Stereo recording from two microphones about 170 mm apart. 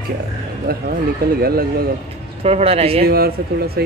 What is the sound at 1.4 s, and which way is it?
Speech, 60° right (ahead or behind).